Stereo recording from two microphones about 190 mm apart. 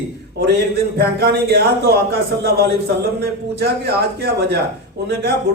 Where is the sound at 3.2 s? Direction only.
60° right (ahead or behind).